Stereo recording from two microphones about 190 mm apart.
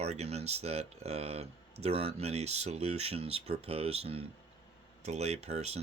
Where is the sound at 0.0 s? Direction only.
35° right (ahead or behind).